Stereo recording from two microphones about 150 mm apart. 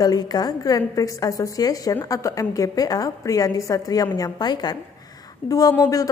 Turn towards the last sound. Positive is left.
turn(degrees=25)  # may be behind; listen again after turning